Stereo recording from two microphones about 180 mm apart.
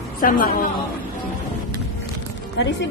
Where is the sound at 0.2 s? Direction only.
50° left (ahead or behind).